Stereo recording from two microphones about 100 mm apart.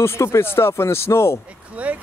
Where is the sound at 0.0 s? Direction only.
25° left (ahead or behind).